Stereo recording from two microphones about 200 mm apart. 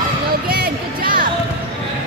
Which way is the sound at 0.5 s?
50° right (ahead or behind).